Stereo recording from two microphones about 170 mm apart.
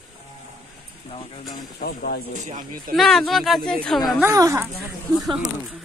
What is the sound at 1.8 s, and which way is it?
Speech, 65° left (ahead or behind).